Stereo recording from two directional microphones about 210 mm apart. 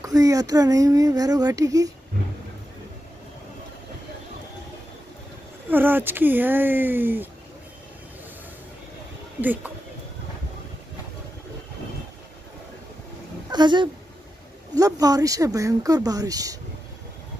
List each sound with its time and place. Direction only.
0.0 s speech: 15° right (ahead or behind)
5.7 s speech: 10° right (ahead or behind)
9.4 s speech: 10° right (ahead or behind)
13.5 s speech: 20° right (ahead or behind)